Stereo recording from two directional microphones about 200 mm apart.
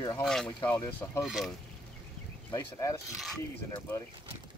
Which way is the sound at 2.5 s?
15° left (ahead or behind).